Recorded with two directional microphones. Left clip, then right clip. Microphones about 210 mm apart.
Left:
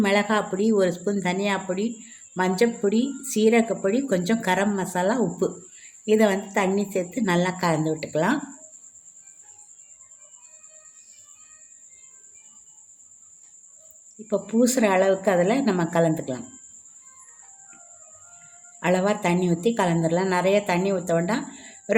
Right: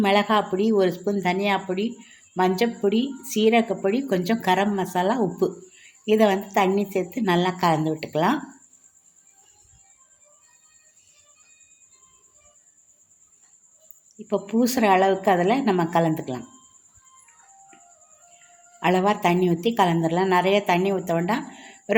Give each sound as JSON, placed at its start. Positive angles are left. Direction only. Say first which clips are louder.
{"t": 0.0, "sound": "a woman's voice", "louder": "right 2 dB", "side_deg": -10}
{"t": 14.3, "sound": "a woman's voice", "louder": "left 1 dB", "side_deg": -10}
{"t": 18.8, "sound": "a woman's voice", "louder": "right 2 dB", "side_deg": -10}